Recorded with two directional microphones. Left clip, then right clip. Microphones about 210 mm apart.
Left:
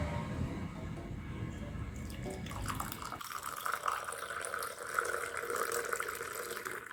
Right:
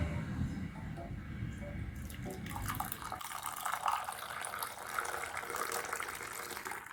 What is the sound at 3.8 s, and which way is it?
Water, 10° right (ahead or behind).